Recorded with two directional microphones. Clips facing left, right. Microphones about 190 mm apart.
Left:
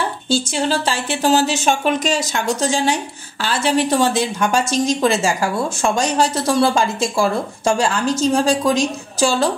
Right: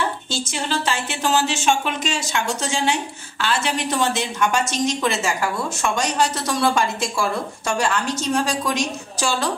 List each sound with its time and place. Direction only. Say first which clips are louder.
0.3 s speech: left 7 dB; 35° left (ahead or behind)